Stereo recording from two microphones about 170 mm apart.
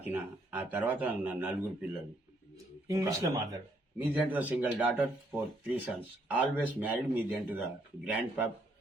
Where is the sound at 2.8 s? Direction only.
20° right (ahead or behind).